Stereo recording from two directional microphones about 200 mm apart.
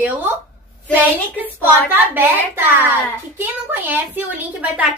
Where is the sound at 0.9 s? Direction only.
10° right (ahead or behind).